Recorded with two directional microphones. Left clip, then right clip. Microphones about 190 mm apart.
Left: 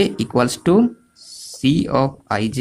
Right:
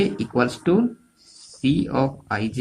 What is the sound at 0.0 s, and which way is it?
Speech, 45° left (ahead or behind).